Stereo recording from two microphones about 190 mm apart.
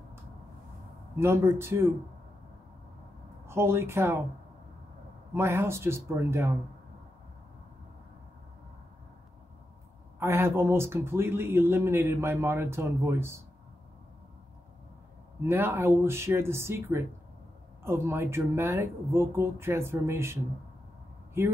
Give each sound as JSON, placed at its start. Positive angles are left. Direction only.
{"t": 1.2, "sound": "speech", "side_deg": -15}
{"t": 3.4, "sound": "speech", "side_deg": -15}
{"t": 5.3, "sound": "speech", "side_deg": -15}
{"t": 10.1, "sound": "speech", "side_deg": -15}
{"t": 15.4, "sound": "speech", "side_deg": -10}
{"t": 21.4, "sound": "speech", "side_deg": -15}